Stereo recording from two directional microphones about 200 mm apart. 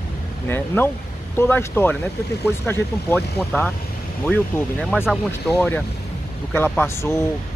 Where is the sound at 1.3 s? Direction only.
10° left (ahead or behind); by 5.6 s 5° right (ahead or behind).